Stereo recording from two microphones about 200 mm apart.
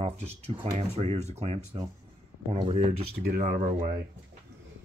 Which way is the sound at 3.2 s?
50° right (ahead or behind).